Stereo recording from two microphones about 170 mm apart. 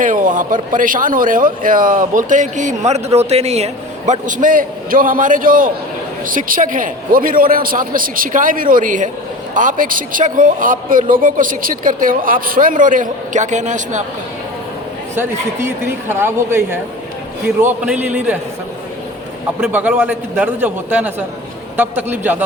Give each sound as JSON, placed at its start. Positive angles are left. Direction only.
{"t": 0.0, "sound": "a man's voice", "side_deg": -50}
{"t": 15.1, "sound": "a man's voice", "side_deg": -15}
{"t": 19.6, "sound": "a man's voice", "side_deg": -10}